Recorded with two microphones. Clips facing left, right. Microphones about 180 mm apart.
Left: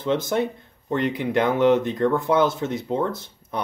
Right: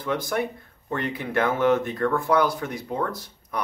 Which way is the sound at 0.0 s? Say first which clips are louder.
Left 4 dB; 25° left (ahead or behind).